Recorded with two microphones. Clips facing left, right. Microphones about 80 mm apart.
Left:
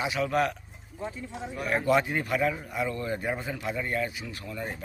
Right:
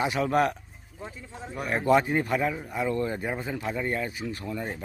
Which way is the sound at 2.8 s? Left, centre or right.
Right.